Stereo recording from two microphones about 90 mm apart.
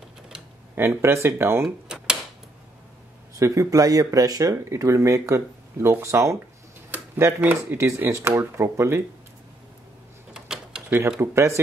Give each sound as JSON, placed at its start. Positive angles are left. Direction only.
{"t": 0.7, "sound": "speech", "side_deg": -25}
{"t": 1.9, "sound": "a sound", "side_deg": -10}
{"t": 3.3, "sound": "speech", "side_deg": -35}
{"t": 10.3, "sound": "mechanisms", "side_deg": -10}
{"t": 11.1, "sound": "speech", "side_deg": -30}